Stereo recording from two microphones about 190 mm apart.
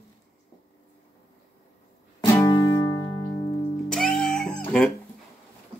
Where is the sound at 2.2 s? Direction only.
15° left (ahead or behind).